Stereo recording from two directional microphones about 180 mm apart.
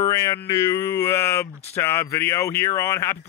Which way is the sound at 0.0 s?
15° left (ahead or behind).